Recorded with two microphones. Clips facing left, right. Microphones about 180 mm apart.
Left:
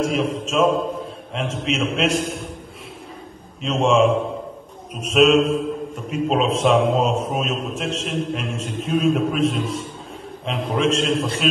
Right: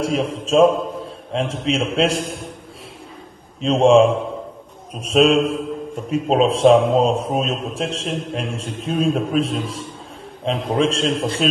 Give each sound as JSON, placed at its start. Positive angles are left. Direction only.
{"t": 0.0, "sound": "a man's voice", "side_deg": -35}
{"t": 3.6, "sound": "a man's voice", "side_deg": -35}